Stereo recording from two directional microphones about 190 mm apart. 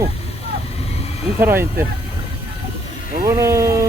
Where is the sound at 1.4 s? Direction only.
10° right (ahead or behind).